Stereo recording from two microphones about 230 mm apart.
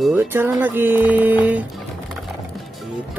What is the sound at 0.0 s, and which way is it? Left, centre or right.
Speech, centre.